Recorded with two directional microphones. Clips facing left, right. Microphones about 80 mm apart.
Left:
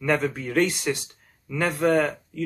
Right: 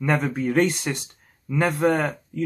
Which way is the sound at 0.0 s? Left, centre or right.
Centre.